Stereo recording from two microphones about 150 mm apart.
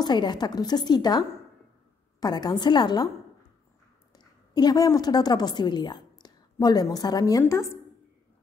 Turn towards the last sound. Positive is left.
turn(degrees=20)  # may be behind; listen again after turning